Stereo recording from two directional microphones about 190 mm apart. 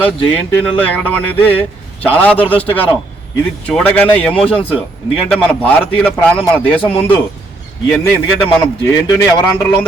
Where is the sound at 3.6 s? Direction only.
5° left (ahead or behind).